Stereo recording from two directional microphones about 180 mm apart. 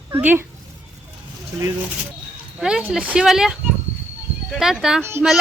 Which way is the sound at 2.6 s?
5° right (ahead or behind).